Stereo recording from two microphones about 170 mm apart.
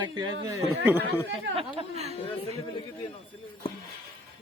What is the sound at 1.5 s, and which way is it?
Speech, 35° right (ahead or behind).